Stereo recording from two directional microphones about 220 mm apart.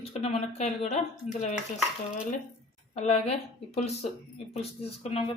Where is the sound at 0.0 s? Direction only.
25° left (ahead or behind).